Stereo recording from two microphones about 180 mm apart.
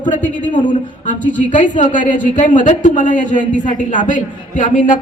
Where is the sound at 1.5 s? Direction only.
45° left (ahead or behind).